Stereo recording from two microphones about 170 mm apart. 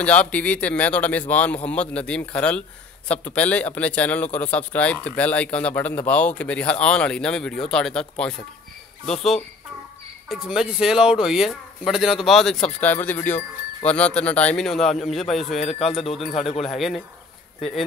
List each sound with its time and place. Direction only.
0.0 s speech: 5° left (ahead or behind)
16.3 s speech: 40° left (ahead or behind)
16.6 s speech: centre (ahead or behind)